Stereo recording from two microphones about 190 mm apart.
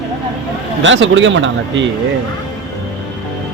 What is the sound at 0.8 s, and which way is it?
A man's voice, 80° right.